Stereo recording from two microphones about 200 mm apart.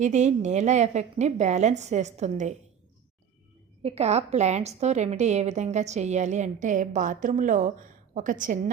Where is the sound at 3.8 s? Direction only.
30° right (ahead or behind).